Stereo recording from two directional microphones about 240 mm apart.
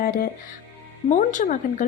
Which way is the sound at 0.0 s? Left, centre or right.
Left.